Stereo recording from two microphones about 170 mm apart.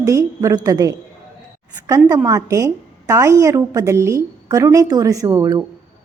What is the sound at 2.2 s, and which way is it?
A woman's voice, 20° right (ahead or behind).